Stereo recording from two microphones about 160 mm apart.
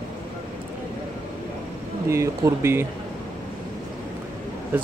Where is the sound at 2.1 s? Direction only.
20° right (ahead or behind).